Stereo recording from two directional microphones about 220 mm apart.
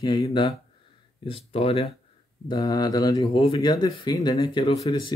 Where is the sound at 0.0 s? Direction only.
20° left (ahead or behind).